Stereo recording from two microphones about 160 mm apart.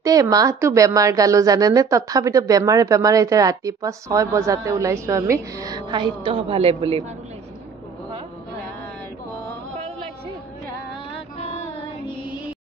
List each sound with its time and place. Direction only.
0.0 s speech: 20° right (ahead or behind)
11.3 s child singing: 40° left (ahead or behind)